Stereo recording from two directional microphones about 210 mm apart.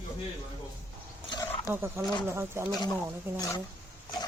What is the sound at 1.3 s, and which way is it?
Wild animals, 10° left (ahead or behind).